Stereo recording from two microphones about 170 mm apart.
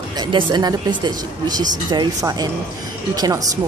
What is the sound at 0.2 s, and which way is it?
Speech, 30° right (ahead or behind).